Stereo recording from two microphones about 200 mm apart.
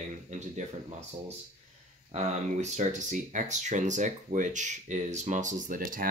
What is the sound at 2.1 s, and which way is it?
Speech, 35° right (ahead or behind).